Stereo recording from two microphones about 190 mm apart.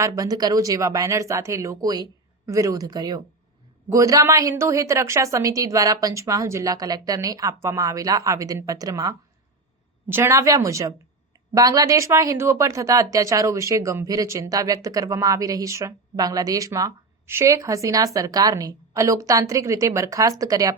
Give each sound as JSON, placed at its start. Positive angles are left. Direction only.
{"t": 0.0, "sound": "speech", "side_deg": -20}